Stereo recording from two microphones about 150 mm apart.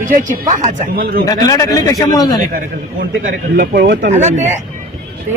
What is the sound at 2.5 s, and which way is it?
A man's voice, 70° right (ahead or behind).